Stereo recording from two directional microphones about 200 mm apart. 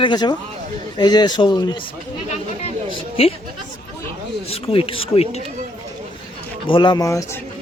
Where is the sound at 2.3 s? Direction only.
30° left (ahead or behind).